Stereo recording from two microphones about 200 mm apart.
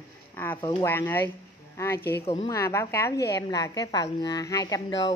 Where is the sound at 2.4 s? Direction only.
15° left (ahead or behind).